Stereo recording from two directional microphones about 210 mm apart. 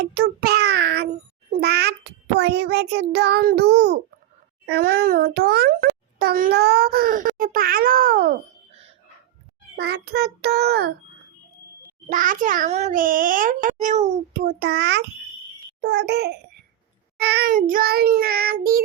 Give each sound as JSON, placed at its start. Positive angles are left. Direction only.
{"t": 0.2, "sound": "child singing", "side_deg": -50}
{"t": 9.7, "sound": "child singing", "side_deg": -50}
{"t": 12.0, "sound": "a child's voice", "side_deg": -40}
{"t": 15.8, "sound": "child singing", "side_deg": -55}